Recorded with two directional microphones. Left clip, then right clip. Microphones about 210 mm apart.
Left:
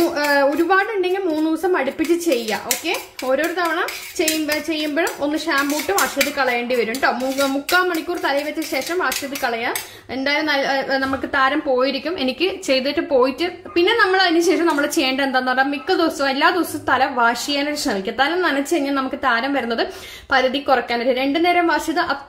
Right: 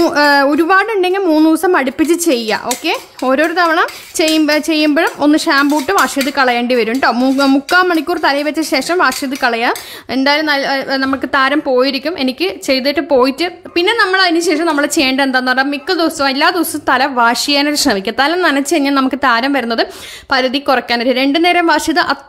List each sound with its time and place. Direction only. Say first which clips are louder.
0.0 s a woman's voice: right 7 dB; 45° right (ahead or behind)